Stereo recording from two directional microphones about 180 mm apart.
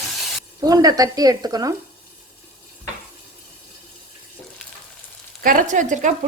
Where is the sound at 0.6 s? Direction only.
20° right (ahead or behind).